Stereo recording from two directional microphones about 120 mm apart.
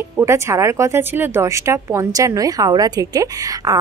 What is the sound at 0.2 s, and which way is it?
Speech, 25° right (ahead or behind).